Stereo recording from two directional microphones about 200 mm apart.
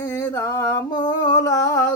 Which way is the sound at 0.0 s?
15° left (ahead or behind).